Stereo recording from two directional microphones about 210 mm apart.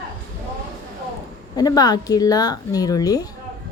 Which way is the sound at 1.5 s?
20° left (ahead or behind).